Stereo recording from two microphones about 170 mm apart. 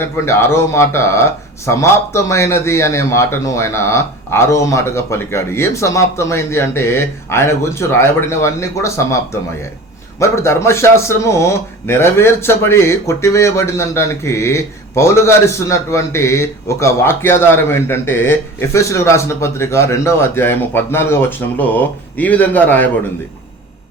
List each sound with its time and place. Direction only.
0.0 s a man's voice: 15° left (ahead or behind)